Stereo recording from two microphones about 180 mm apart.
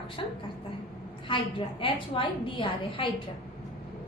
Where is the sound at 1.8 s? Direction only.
30° left (ahead or behind).